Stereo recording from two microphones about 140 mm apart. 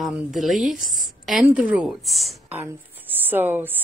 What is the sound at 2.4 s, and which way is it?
Speech, 15° right (ahead or behind).